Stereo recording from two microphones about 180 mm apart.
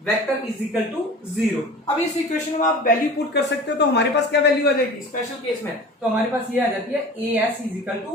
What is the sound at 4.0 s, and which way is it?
Speech, 70° left (ahead or behind).